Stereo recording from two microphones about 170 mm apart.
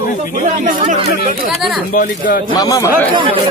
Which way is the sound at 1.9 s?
55° left (ahead or behind).